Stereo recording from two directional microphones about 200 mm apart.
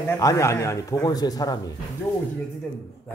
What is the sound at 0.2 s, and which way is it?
A man's voice, 15° left (ahead or behind).